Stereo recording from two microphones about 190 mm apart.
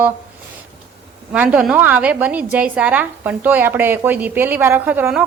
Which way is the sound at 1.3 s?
10° right (ahead or behind).